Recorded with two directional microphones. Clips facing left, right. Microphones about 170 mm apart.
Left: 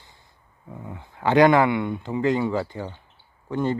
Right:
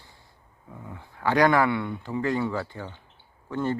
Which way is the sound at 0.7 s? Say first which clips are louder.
Left 4 dB; 20° left (ahead or behind).